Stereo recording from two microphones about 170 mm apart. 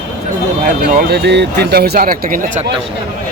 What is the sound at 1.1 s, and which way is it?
Speech, 85° right.